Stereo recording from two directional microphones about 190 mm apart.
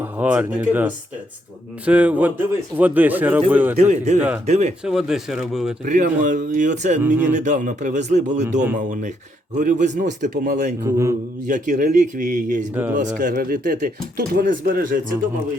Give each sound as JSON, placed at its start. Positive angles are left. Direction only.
{"t": 0.0, "sound": "speech", "side_deg": -5}
{"t": 3.8, "sound": "speech", "side_deg": -35}
{"t": 4.9, "sound": "speech", "side_deg": -5}
{"t": 5.8, "sound": "speech", "side_deg": -40}
{"t": 10.8, "sound": "speech", "side_deg": -15}
{"t": 11.4, "sound": "speech", "side_deg": -40}
{"t": 12.7, "sound": "speech", "side_deg": -10}
{"t": 13.1, "sound": "speech", "side_deg": -50}